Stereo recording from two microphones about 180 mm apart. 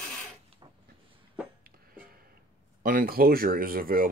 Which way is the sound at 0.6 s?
25° right (ahead or behind).